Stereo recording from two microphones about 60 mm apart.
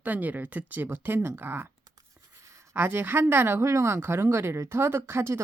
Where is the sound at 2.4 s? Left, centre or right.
Right.